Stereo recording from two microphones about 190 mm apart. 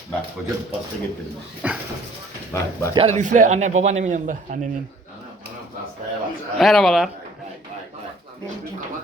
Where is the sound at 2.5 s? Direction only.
15° left (ahead or behind).